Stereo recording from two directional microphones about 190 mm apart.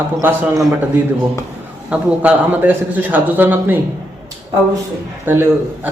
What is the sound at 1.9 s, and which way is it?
A man's voice, 10° right (ahead or behind).